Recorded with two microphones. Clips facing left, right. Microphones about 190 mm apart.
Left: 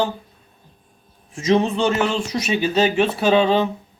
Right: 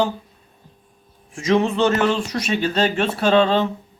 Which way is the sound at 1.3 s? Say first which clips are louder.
Even; 20° left (ahead or behind).